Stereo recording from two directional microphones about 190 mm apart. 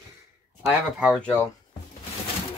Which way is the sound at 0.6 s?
5° right (ahead or behind).